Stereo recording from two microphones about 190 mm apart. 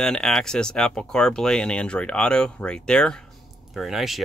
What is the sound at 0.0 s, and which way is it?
Speech, 5° left (ahead or behind).